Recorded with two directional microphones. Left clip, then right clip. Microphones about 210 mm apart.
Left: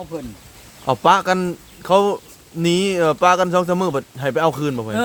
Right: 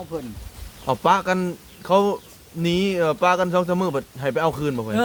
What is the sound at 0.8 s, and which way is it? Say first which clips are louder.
A man's voice: left 4 dB; 20° left (ahead or behind).